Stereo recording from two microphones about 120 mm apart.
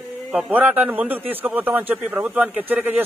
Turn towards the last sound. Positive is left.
turn(degrees=-15)  # may be behind; listen again after turning